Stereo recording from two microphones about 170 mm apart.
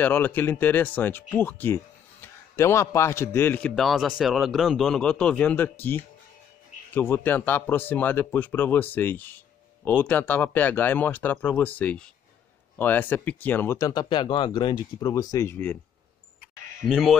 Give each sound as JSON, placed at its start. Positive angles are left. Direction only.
{"t": 0.0, "sound": "a man's voice", "side_deg": 10}
{"t": 16.8, "sound": "a man's voice", "side_deg": 0}